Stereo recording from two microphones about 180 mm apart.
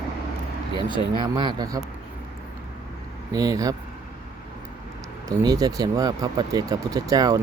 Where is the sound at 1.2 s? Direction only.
25° right (ahead or behind).